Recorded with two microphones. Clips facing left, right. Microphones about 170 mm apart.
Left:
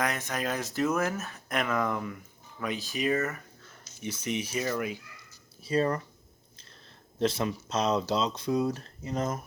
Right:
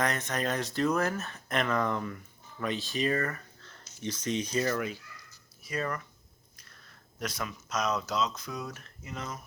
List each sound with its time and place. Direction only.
0.0 s speech: 5° left (ahead or behind)
5.6 s speech: 30° left (ahead or behind)
7.2 s speech: 30° left (ahead or behind)